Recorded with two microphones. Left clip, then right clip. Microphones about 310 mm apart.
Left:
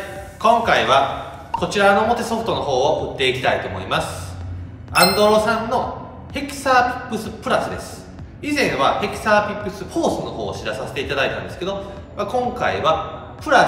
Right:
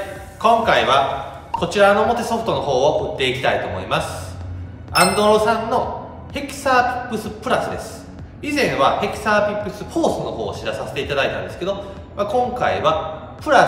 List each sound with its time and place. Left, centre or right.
0.4 s a man's voice: centre